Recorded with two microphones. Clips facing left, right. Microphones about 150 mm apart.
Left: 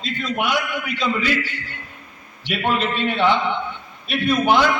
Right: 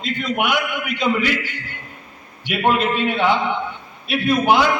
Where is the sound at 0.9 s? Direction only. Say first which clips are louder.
Right 3 dB; 55° right (ahead or behind).